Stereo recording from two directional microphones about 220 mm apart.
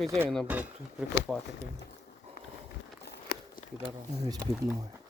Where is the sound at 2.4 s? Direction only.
45° left (ahead or behind).